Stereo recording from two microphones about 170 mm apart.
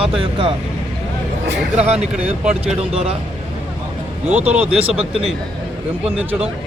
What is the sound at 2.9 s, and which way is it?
Speech, 35° right (ahead or behind).